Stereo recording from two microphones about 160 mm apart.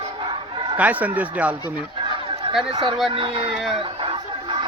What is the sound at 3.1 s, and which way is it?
Speech, 30° right (ahead or behind).